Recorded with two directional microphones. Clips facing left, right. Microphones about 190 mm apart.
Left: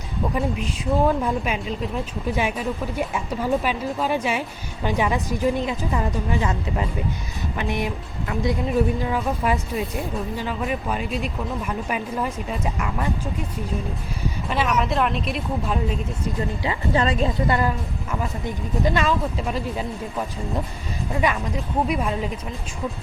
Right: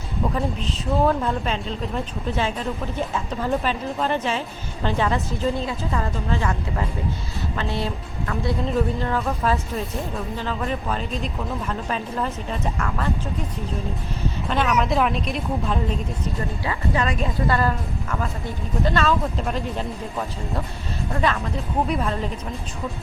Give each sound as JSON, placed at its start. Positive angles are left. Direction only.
{"t": 0.3, "sound": "speech", "side_deg": 10}
{"t": 14.5, "sound": "a woman's voice", "side_deg": 5}
{"t": 16.6, "sound": "speech", "side_deg": 30}
{"t": 17.5, "sound": "a woman's voice", "side_deg": 15}